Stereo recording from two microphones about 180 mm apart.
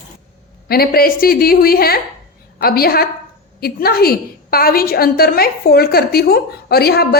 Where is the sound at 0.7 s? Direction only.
55° left (ahead or behind).